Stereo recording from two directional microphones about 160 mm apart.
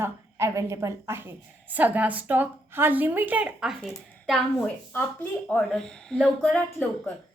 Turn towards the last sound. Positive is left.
turn(degrees=10)  # may be behind; listen again after turning